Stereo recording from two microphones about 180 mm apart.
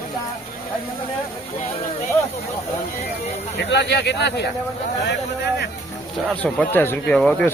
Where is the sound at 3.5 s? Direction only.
75° left (ahead or behind).